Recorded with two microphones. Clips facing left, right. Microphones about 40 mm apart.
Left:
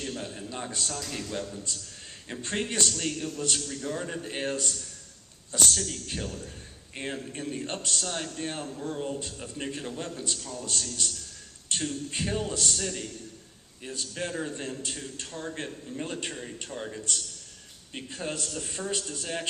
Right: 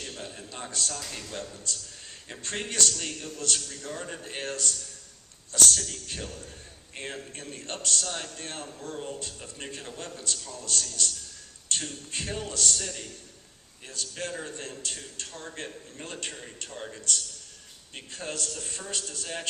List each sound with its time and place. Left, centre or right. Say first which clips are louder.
0.0 s a man's voice: left 4 dB; centre
7.6 s a man's voice: left 3 dB; centre
7.9 s a man's voice: even; centre
12.1 s a man's voice: even; centre